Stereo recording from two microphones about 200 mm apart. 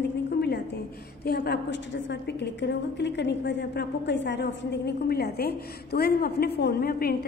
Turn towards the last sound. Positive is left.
turn(degrees=50)  # may be behind; listen again after turning